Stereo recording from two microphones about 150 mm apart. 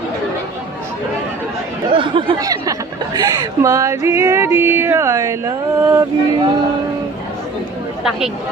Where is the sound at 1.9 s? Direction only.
35° right (ahead or behind); by 6.0 s 20° right (ahead or behind).